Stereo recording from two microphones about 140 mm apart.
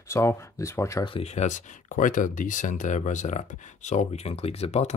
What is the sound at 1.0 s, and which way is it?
Speech, 45° left (ahead or behind).